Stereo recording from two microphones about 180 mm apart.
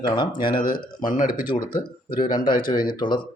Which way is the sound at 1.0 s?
50° left (ahead or behind).